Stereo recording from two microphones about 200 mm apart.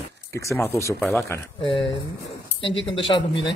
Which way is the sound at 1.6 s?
25° left (ahead or behind).